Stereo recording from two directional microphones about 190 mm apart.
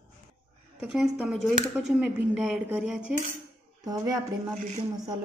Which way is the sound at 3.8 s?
20° right (ahead or behind).